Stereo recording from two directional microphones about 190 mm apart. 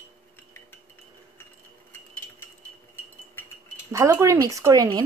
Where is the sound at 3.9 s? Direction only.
15° right (ahead or behind).